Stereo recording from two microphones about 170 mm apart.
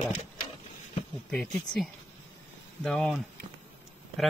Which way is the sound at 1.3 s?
5° left (ahead or behind).